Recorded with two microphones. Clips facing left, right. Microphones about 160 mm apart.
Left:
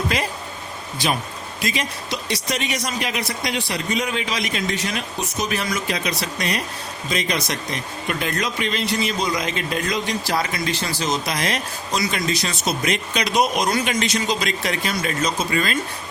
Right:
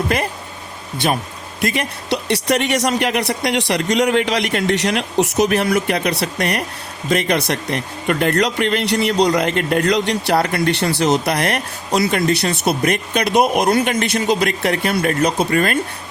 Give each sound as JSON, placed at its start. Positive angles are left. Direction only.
{"t": 0.1, "sound": "speech", "side_deg": -55}